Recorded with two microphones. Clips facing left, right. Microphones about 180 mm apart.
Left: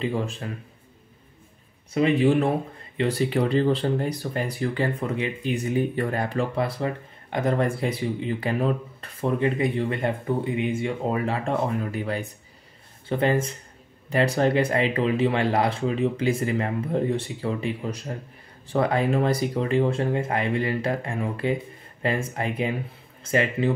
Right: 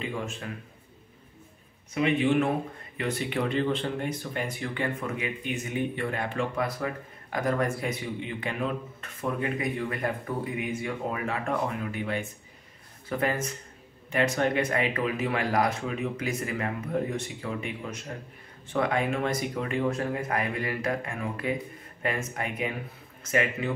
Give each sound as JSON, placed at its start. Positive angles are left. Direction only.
{"t": 0.0, "sound": "speech", "side_deg": 35}
{"t": 2.0, "sound": "speech", "side_deg": 35}